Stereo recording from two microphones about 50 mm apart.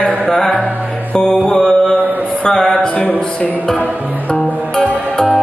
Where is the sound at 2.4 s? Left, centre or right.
Centre.